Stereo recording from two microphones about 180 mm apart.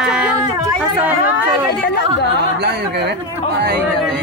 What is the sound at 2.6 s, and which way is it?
Speech, 65° right (ahead or behind).